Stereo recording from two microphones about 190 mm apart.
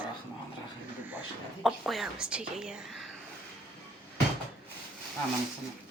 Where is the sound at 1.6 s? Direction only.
Centre (ahead or behind).